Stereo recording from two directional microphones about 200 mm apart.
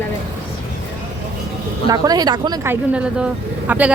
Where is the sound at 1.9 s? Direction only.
20° right (ahead or behind).